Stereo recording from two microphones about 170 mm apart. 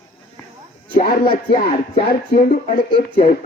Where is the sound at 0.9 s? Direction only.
60° left (ahead or behind).